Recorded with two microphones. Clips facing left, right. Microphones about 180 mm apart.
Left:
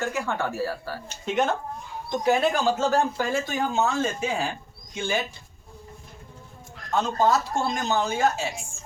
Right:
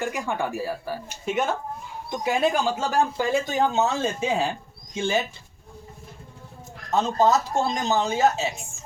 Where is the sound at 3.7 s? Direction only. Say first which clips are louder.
Right 1 dB; 25° right (ahead or behind).